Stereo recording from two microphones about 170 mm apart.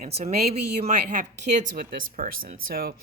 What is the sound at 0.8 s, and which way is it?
Speech, 50° right (ahead or behind).